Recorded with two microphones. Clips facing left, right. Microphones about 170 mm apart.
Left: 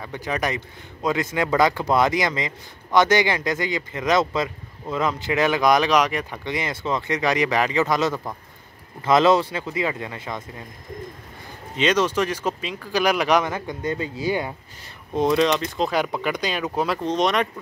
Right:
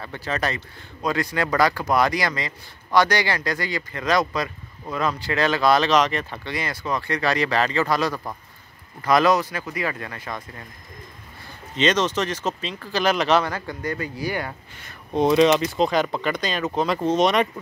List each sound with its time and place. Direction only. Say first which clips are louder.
0.0 s speech: left 1 dB; 15° left (ahead or behind)
11.7 s speech: left 1 dB; 10° left (ahead or behind)
15.1 s speech: right 3 dB; centre (ahead or behind)
15.9 s speech: right 1 dB; 10° left (ahead or behind)
17.0 s speech: right 4 dB; 5° right (ahead or behind)